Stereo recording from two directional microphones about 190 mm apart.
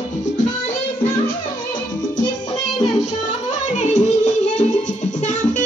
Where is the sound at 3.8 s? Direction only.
40° left (ahead or behind).